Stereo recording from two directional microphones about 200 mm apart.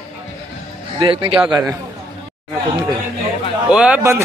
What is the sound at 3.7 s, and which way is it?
Speech, 5° right (ahead or behind).